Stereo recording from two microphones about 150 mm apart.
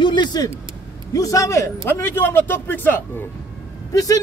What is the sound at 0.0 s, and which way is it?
Vehicle, 30° left (ahead or behind).